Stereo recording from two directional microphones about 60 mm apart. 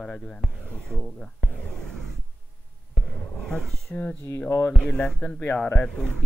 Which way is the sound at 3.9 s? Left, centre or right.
Left.